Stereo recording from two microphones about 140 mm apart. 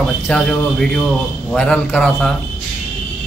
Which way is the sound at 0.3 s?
5° left (ahead or behind).